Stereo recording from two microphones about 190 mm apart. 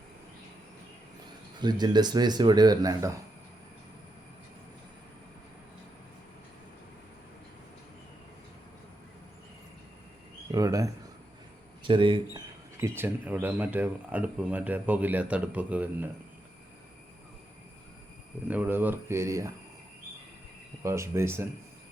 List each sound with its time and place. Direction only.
1.6 s speech: 20° right (ahead or behind)
10.5 s speech: 20° right (ahead or behind)
12.8 s speech: 10° right (ahead or behind)
18.4 s speech: 10° right (ahead or behind)
20.8 s speech: 15° right (ahead or behind)